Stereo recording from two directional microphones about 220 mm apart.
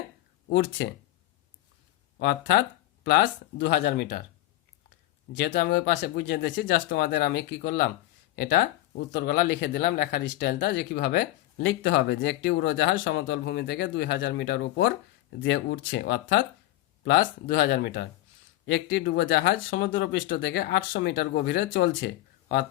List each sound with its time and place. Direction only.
0.4 s speech: 60° left (ahead or behind)
2.1 s speech: 50° left (ahead or behind)
5.3 s speech: 50° left (ahead or behind)